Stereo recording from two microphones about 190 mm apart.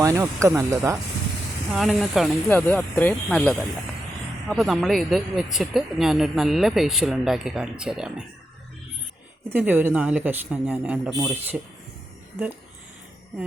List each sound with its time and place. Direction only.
0.0 s speech: 15° right (ahead or behind)
1.7 s speech: centre (ahead or behind)
9.5 s speech: 10° right (ahead or behind)